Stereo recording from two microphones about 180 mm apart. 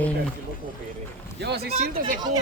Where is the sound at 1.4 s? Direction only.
65° right (ahead or behind).